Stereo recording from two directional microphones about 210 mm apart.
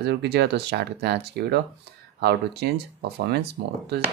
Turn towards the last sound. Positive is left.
turn(degrees=-50)  # may be behind; listen again after turning